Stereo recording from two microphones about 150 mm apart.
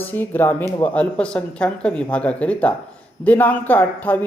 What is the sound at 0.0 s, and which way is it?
Speech, 15° left (ahead or behind).